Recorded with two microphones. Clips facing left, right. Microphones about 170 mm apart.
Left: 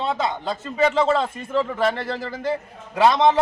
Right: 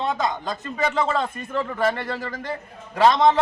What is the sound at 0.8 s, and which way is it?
Speech, 25° left (ahead or behind).